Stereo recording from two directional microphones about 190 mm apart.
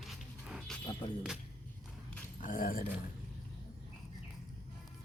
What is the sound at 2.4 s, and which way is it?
Speech, 45° left (ahead or behind).